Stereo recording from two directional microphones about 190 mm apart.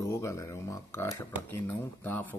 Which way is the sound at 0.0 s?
15° left (ahead or behind).